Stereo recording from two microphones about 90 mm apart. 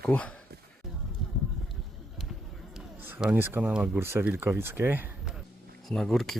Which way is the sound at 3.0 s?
25° right (ahead or behind).